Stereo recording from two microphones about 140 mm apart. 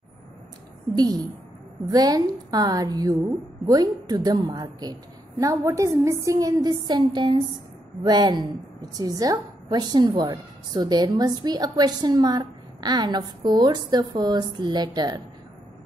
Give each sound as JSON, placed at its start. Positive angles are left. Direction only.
{"t": 0.9, "sound": "a woman's voice", "side_deg": -30}